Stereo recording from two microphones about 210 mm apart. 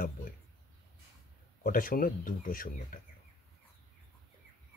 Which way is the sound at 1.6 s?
40° left (ahead or behind).